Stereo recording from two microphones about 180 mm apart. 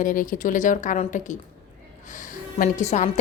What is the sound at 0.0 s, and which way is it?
A woman's voice, 45° left (ahead or behind).